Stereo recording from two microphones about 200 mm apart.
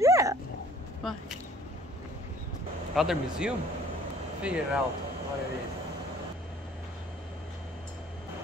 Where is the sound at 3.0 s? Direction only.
5° right (ahead or behind).